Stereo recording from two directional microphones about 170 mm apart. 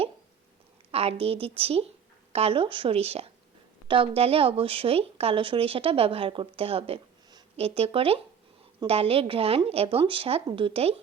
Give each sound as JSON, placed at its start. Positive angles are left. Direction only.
{"t": 0.9, "sound": "a woman's voice", "side_deg": -35}